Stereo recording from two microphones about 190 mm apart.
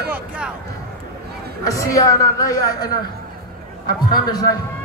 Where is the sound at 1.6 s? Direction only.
15° left (ahead or behind).